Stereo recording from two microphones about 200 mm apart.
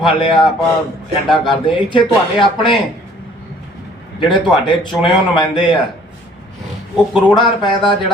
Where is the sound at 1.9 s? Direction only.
25° left (ahead or behind).